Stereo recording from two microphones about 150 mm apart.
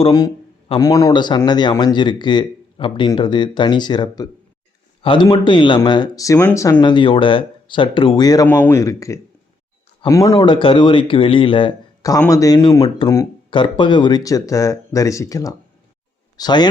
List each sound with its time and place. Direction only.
0.8 s speech: 25° left (ahead or behind)
6.8 s speech: 35° left (ahead or behind)
10.3 s speech: 35° left (ahead or behind)
12.3 s speech: 20° left (ahead or behind)
13.5 s speech: 30° left (ahead or behind)